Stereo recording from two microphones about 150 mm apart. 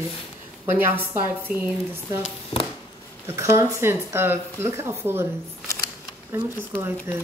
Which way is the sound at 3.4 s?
20° right (ahead or behind).